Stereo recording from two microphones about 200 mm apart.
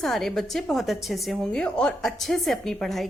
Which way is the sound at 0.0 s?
Centre (ahead or behind).